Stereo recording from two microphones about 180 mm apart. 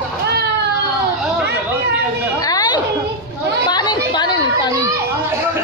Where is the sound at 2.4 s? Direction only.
20° left (ahead or behind).